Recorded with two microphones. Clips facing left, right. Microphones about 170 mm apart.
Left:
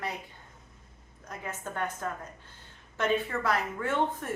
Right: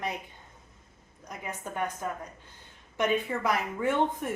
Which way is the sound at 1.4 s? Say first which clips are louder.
Right 1 dB; 15° right (ahead or behind).